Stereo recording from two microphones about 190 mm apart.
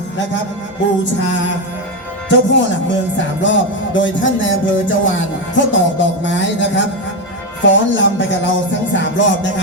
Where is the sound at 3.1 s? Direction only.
75° left (ahead or behind).